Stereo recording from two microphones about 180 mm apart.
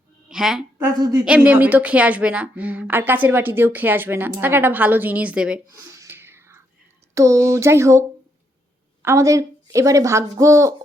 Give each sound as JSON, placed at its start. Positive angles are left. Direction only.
{"t": 0.3, "sound": "a woman's voice", "side_deg": -5}
{"t": 0.9, "sound": "a woman's voice", "side_deg": -20}
{"t": 1.2, "sound": "a woman's voice", "side_deg": -5}
{"t": 5.9, "sound": "a sound", "side_deg": -15}
{"t": 7.1, "sound": "a woman's voice", "side_deg": -15}